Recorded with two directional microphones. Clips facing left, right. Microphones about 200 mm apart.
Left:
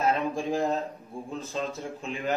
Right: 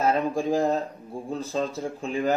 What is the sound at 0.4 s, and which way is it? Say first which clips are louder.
Speech: right 4 dB; 35° right (ahead or behind).